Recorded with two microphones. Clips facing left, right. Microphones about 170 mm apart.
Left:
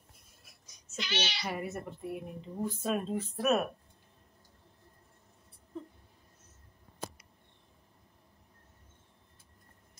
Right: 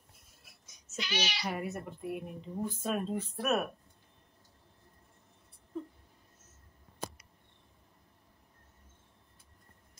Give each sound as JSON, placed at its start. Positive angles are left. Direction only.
{"t": 0.7, "sound": "child singing", "side_deg": -5}
{"t": 1.4, "sound": "a woman's voice", "side_deg": 0}